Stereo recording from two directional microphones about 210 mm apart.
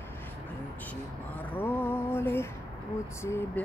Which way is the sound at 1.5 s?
10° left (ahead or behind).